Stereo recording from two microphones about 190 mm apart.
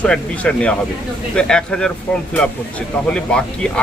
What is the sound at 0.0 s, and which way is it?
Speech, 5° left (ahead or behind).